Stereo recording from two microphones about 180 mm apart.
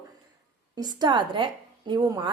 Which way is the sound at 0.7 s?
25° right (ahead or behind).